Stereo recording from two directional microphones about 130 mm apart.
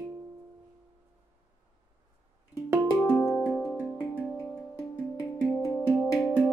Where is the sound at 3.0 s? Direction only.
10° left (ahead or behind).